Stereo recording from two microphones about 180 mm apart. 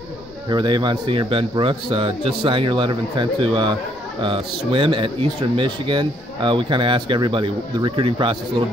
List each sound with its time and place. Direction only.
0.5 s speech: 25° right (ahead or behind)